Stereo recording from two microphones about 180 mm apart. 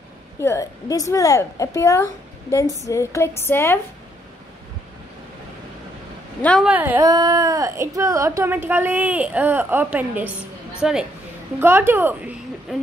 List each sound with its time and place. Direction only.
0.4 s a woman's voice: 15° left (ahead or behind)
6.4 s speech: 5° left (ahead or behind)
6.7 s speech: 10° right (ahead or behind)
7.1 s a woman's voice: 20° right (ahead or behind)